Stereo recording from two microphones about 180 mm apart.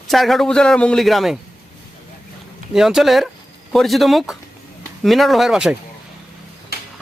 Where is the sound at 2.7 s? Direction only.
Centre (ahead or behind).